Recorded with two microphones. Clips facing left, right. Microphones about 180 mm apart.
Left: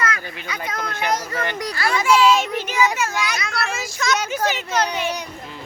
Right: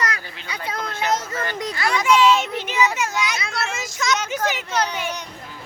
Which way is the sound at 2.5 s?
20° right (ahead or behind).